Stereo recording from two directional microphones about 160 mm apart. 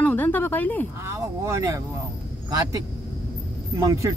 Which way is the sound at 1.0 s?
20° right (ahead or behind).